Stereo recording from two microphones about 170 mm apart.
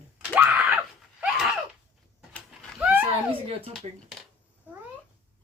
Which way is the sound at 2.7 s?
5° right (ahead or behind).